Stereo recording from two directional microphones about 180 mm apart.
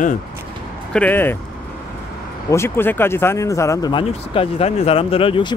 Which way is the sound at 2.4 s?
15° left (ahead or behind).